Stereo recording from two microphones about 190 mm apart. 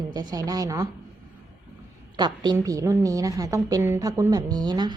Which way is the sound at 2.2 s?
20° right (ahead or behind).